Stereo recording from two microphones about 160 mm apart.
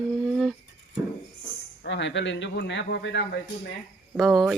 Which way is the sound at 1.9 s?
90° left.